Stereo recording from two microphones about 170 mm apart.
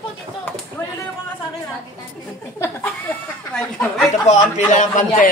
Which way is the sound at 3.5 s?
5° left (ahead or behind).